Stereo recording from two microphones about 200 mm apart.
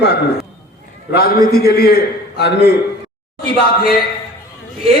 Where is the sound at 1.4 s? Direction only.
50° left (ahead or behind).